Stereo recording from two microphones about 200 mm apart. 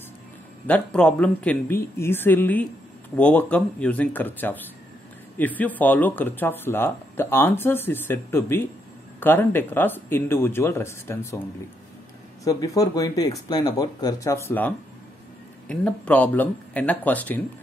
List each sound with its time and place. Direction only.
0.7 s speech: 5° left (ahead or behind)
12.4 s speech: 20° left (ahead or behind)
15.7 s speech: 5° left (ahead or behind)